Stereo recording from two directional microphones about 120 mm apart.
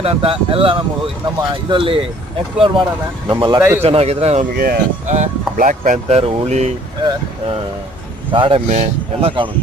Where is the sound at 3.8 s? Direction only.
60° right (ahead or behind).